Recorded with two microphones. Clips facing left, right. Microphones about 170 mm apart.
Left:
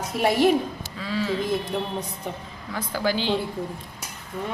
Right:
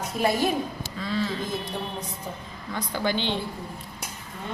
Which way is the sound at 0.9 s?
10° left (ahead or behind).